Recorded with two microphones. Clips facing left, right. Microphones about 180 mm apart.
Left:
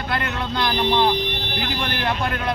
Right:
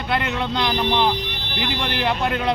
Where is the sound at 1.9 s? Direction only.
20° right (ahead or behind).